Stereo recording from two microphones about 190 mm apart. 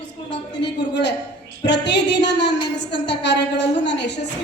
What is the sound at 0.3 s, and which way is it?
A woman's voice, 65° left (ahead or behind).